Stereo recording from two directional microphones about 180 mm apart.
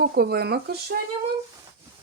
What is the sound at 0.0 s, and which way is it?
Speech, 60° right (ahead or behind).